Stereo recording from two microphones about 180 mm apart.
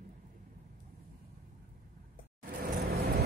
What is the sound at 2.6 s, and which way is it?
Vehicle, 60° right (ahead or behind).